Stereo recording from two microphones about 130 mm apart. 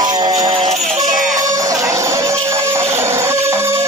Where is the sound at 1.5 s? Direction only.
25° right (ahead or behind).